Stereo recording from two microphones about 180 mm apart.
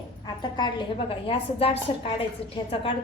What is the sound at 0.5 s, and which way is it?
A woman's voice, 25° left (ahead or behind).